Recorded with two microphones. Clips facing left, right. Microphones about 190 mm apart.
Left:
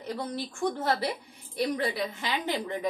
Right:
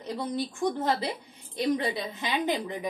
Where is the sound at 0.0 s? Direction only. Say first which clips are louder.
Right 2 dB; 15° right (ahead or behind).